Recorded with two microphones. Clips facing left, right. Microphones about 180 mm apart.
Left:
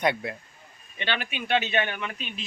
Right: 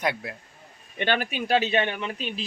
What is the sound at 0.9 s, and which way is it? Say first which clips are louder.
Speech: right 5 dB; 45° right (ahead or behind).